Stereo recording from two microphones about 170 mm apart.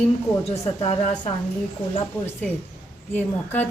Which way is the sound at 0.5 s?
40° left (ahead or behind).